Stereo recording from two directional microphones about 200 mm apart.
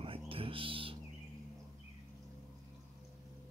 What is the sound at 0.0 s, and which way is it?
Music, 25° right (ahead or behind).